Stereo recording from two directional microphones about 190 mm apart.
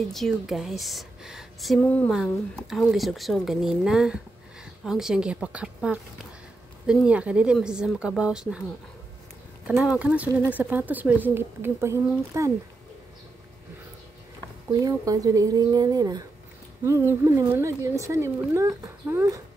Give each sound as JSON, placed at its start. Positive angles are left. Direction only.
{"t": 0.1, "sound": "a woman's voice", "side_deg": 0}
{"t": 9.7, "sound": "speech", "side_deg": -5}
{"t": 14.7, "sound": "speech", "side_deg": -20}